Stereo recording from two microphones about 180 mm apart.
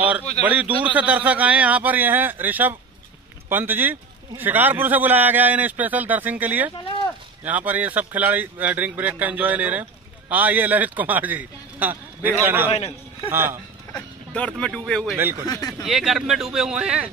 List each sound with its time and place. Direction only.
0.5 s a man's voice: 10° right (ahead or behind)
12.7 s a man's voice: 35° left (ahead or behind)
13.3 s a man's voice: 15° right (ahead or behind)
13.9 s speech: 5° left (ahead or behind)
15.1 s a man's voice: 10° right (ahead or behind)
15.4 s speech: 20° left (ahead or behind)
15.8 s speech: centre (ahead or behind)